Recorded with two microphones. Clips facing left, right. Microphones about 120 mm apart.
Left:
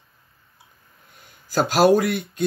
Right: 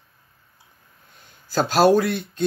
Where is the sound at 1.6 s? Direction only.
10° left (ahead or behind).